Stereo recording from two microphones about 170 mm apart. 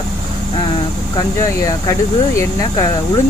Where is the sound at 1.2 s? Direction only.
20° left (ahead or behind).